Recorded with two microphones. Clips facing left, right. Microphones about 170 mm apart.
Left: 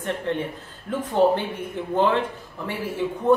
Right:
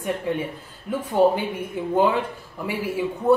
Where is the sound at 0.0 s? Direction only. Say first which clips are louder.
Right 1 dB; 10° right (ahead or behind).